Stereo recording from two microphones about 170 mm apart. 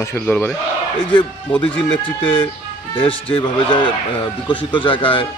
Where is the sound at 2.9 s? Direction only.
30° left (ahead or behind).